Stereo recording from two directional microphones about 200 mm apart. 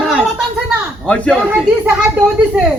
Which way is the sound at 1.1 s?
5° left (ahead or behind).